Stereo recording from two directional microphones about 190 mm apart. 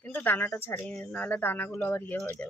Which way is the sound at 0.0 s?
10° left (ahead or behind).